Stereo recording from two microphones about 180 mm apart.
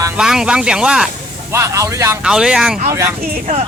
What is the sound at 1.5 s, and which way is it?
Speech, 15° right (ahead or behind).